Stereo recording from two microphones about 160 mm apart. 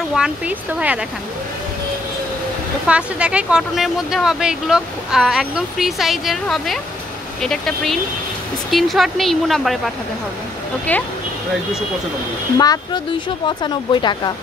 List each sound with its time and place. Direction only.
0.1 s speech: 5° right (ahead or behind)
2.9 s speech: 5° right (ahead or behind)
10.9 s speech: 10° left (ahead or behind)
12.5 s speech: 25° left (ahead or behind)